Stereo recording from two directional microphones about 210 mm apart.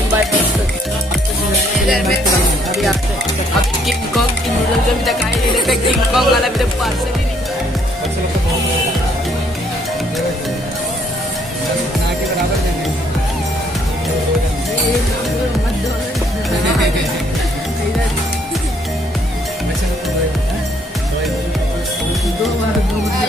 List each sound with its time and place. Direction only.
5.0 s music: centre (ahead or behind)